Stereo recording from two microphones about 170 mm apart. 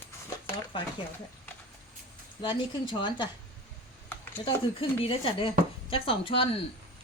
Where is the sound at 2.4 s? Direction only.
25° left (ahead or behind).